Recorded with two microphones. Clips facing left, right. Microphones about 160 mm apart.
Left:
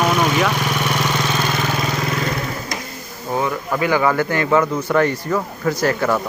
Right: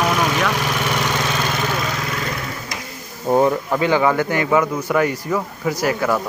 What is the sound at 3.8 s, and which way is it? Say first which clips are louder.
Speech: left 1 dB; 20° right (ahead or behind).